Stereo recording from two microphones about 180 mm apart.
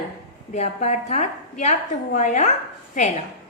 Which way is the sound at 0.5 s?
40° left (ahead or behind).